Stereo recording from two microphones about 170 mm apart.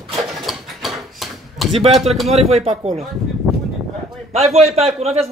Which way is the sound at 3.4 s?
Centre (ahead or behind).